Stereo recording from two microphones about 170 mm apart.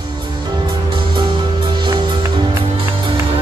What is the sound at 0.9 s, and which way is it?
Music, 30° right (ahead or behind).